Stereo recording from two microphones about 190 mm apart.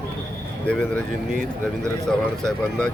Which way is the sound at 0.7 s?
5° left (ahead or behind).